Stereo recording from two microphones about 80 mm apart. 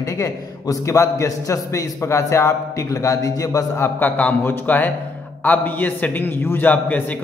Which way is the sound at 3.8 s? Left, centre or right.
Left.